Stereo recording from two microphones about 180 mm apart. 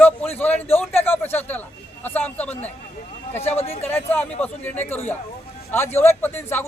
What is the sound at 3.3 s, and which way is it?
Speech, 35° left (ahead or behind).